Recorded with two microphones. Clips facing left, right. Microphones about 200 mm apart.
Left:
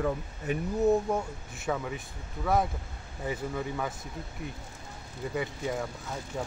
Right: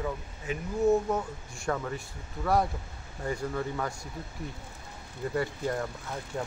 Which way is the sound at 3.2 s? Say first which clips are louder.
Right 1 dB; 5° left (ahead or behind).